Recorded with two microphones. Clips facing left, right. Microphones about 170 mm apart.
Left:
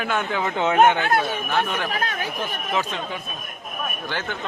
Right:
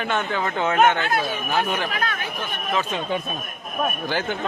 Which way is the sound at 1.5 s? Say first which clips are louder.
Right 1 dB; 5° right (ahead or behind).